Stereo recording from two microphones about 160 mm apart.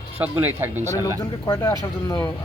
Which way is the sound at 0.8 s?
20° left (ahead or behind).